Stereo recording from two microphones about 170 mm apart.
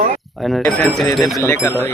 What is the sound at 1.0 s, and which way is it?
Speech, centre (ahead or behind).